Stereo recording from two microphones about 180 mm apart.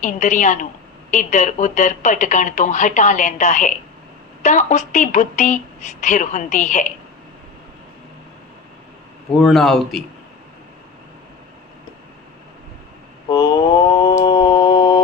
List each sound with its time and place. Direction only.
0.0 s a woman's voice: 40° left (ahead or behind)
9.4 s a man's voice: centre (ahead or behind)
13.2 s a sound: 25° left (ahead or behind)